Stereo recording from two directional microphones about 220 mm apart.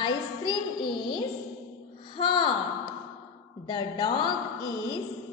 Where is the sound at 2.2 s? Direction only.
20° left (ahead or behind).